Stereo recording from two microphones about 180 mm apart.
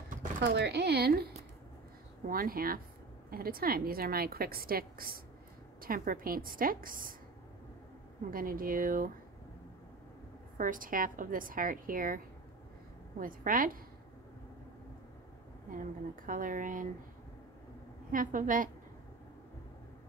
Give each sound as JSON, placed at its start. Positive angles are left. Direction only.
{"t": 0.4, "sound": "a woman's voice", "side_deg": -70}
{"t": 8.3, "sound": "a woman's voice", "side_deg": -50}
{"t": 10.6, "sound": "a woman's voice", "side_deg": -50}
{"t": 13.2, "sound": "a woman's voice", "side_deg": -50}
{"t": 16.3, "sound": "a woman's voice", "side_deg": -50}
{"t": 18.1, "sound": "a woman's voice", "side_deg": -50}